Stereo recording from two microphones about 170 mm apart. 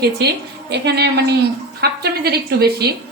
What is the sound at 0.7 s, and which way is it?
A woman's voice, 75° right (ahead or behind).